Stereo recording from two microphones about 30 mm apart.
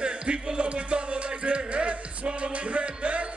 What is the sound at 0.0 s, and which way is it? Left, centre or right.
Music, right.